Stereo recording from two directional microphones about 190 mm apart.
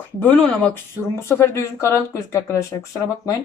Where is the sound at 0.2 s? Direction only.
10° left (ahead or behind).